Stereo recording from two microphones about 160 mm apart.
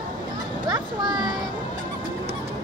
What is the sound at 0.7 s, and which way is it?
Speech, 25° right (ahead or behind).